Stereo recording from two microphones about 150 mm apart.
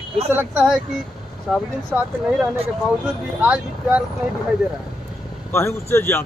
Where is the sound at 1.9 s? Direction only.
10° right (ahead or behind).